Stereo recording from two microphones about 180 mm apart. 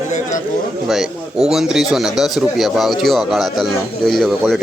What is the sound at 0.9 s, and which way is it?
A man's voice, centre (ahead or behind).